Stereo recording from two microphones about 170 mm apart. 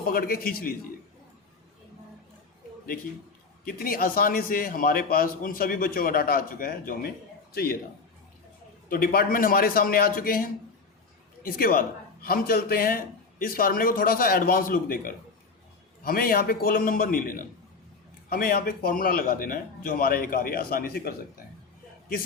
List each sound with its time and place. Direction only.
0.1 s speech: 60° left (ahead or behind)
3.6 s a man's voice: 60° left (ahead or behind)
8.9 s speech: 60° left (ahead or behind)